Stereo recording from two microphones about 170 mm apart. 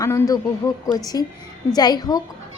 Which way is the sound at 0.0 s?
20° left (ahead or behind).